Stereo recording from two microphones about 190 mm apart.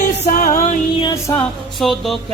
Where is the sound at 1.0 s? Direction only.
25° left (ahead or behind).